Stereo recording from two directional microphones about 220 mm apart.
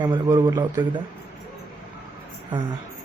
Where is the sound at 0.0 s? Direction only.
20° right (ahead or behind).